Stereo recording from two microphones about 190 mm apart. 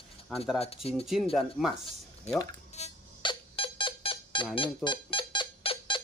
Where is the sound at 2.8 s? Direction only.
30° left (ahead or behind).